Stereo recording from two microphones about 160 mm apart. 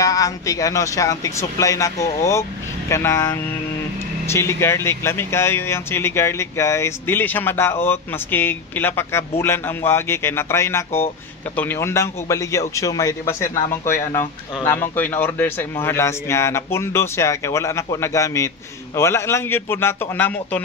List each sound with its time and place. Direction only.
0.0 s a man's voice: 20° left (ahead or behind)